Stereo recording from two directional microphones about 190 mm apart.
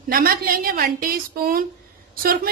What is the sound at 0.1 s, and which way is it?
A woman's voice, 50° right (ahead or behind).